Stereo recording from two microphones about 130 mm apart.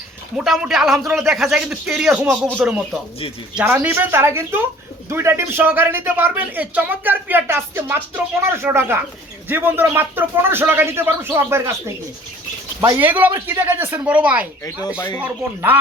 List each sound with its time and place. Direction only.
0.3 s speech: 5° right (ahead or behind)
14.9 s speech: 30° left (ahead or behind)
15.2 s speech: 15° right (ahead or behind)